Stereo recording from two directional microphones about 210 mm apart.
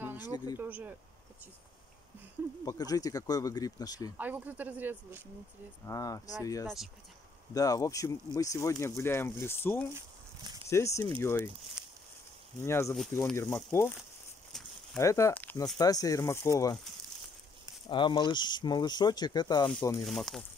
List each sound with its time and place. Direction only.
0.2 s speech: 20° left (ahead or behind)
0.6 s speech: 10° right (ahead or behind)
2.6 s speech: 15° left (ahead or behind)
4.2 s speech: 10° right (ahead or behind)
5.9 s speech: 15° left (ahead or behind)
9.9 s a sound: 20° right (ahead or behind)
10.7 s speech: 15° left (ahead or behind)
12.6 s speech: 10° left (ahead or behind)
15.0 s speech: 15° left (ahead or behind)
17.8 s speech: 20° left (ahead or behind)
20.1 s speech: centre (ahead or behind)